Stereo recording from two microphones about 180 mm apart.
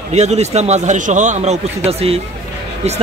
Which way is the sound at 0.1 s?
40° right (ahead or behind).